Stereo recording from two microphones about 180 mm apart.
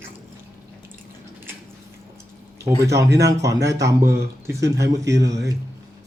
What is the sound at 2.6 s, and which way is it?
Speech, 15° right (ahead or behind).